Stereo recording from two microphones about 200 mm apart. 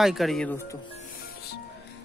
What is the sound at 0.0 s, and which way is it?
Speech, centre (ahead or behind).